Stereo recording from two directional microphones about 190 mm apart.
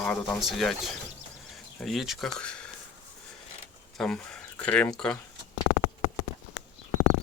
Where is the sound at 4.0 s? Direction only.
5° left (ahead or behind).